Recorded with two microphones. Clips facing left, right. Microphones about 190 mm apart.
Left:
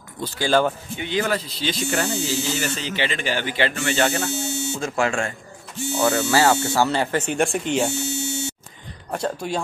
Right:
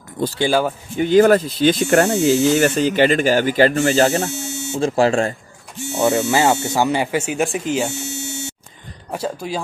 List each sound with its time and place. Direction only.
0.5 s speech: 10° right (ahead or behind)
0.9 s speech: 45° right (ahead or behind)
4.3 s speech: 35° left (ahead or behind)
4.7 s speech: 30° right (ahead or behind)
5.9 s speech: 20° right (ahead or behind); by 7.9 s centre (ahead or behind)
9.1 s speech: 5° right (ahead or behind)